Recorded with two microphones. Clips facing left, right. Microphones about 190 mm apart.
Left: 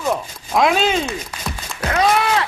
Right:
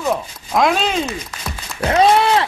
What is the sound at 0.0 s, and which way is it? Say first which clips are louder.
Speech: right 1 dB; centre (ahead or behind).